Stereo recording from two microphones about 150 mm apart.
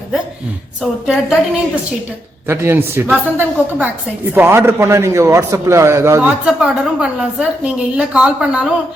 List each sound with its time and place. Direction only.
0.8 s a woman's voice: centre (ahead or behind)
2.5 s a man's voice: 15° right (ahead or behind)
6.2 s a woman's voice: 5° right (ahead or behind)